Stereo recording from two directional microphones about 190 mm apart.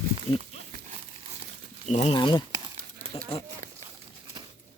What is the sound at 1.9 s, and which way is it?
Speech, 35° left (ahead or behind).